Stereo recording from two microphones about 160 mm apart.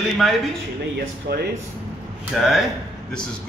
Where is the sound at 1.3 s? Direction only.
90° right.